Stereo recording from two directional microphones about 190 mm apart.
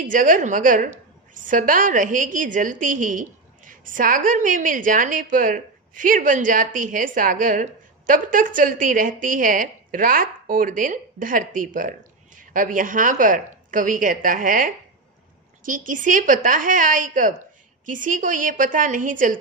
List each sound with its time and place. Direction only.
0.0 s a woman's voice: 45° right (ahead or behind)